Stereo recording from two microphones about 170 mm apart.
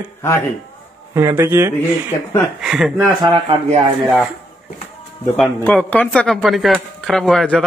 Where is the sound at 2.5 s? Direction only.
5° right (ahead or behind).